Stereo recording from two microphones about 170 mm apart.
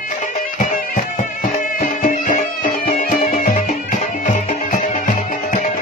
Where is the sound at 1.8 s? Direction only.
55° left (ahead or behind).